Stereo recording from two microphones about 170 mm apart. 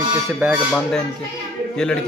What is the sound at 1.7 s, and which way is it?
Speech, 5° left (ahead or behind).